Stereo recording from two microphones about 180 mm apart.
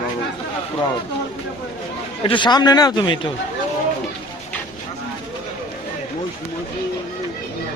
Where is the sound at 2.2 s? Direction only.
25° left (ahead or behind).